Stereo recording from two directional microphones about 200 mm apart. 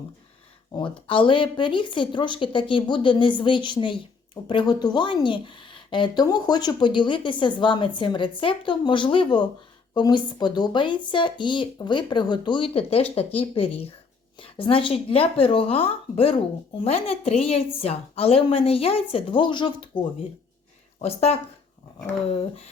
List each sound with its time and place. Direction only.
0.7 s a woman's voice: 25° left (ahead or behind)
21.0 s speech: 30° left (ahead or behind)